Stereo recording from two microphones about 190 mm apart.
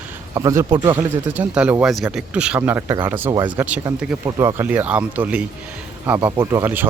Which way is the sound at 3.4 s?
20° right (ahead or behind).